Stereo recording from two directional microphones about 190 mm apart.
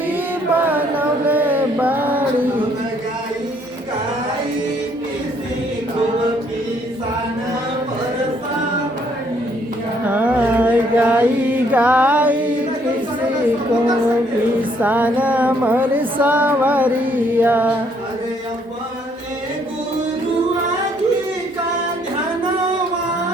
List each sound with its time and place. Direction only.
0.5 s a sound: 10° right (ahead or behind)
10.1 s mantra: 10° right (ahead or behind)
14.8 s music: 10° right (ahead or behind)